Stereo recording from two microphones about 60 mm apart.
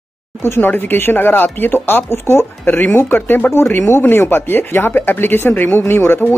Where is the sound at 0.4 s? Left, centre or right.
Left.